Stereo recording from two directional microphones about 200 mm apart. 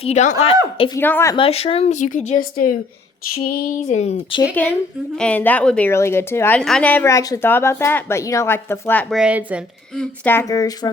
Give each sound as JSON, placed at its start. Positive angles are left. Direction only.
{"t": 0.0, "sound": "speech", "side_deg": 35}
{"t": 0.9, "sound": "speech", "side_deg": 10}
{"t": 1.4, "sound": "speech", "side_deg": 30}
{"t": 5.2, "sound": "speech", "side_deg": 10}
{"t": 10.0, "sound": "speech", "side_deg": 10}